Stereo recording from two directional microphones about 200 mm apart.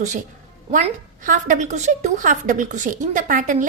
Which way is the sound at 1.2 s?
40° right (ahead or behind).